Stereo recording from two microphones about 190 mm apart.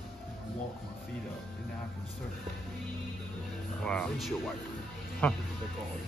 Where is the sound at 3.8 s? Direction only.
5° left (ahead or behind).